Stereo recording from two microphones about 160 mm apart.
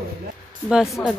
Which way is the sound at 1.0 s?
10° left (ahead or behind).